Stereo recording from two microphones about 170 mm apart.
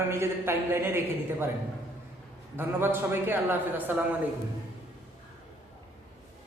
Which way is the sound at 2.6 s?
10° right (ahead or behind).